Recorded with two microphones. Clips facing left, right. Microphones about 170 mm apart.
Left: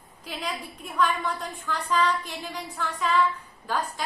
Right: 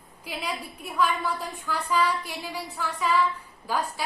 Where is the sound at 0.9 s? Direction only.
5° right (ahead or behind).